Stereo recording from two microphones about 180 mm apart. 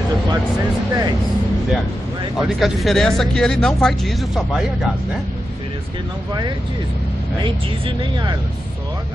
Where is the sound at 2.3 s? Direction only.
Centre (ahead or behind).